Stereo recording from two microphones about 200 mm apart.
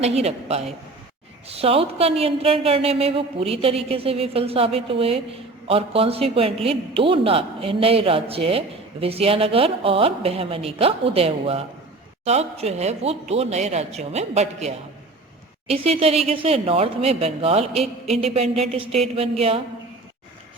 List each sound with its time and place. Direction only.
0.0 s a man's voice: 30° right (ahead or behind)